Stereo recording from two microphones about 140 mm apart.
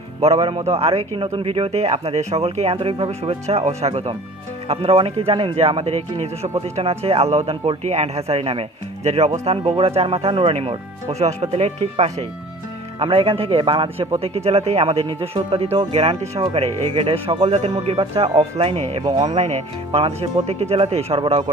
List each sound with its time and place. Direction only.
0.5 s speech: 45° right (ahead or behind)